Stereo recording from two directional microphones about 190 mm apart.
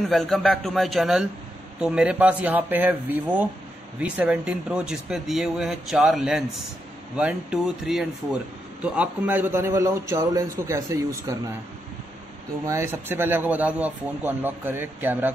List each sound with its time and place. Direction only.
0.1 s speech: 5° left (ahead or behind); by 11.5 s 15° right (ahead or behind)
12.6 s speech: 15° right (ahead or behind)